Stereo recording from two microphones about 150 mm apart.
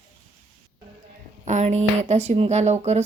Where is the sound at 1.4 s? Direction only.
50° right (ahead or behind).